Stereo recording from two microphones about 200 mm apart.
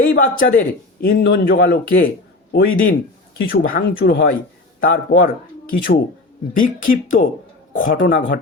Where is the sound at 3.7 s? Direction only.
60° left (ahead or behind).